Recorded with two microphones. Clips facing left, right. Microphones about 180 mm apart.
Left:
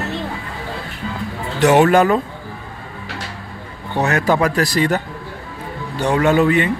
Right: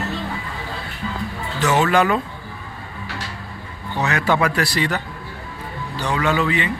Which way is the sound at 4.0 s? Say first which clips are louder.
Left 3 dB; 45° left (ahead or behind).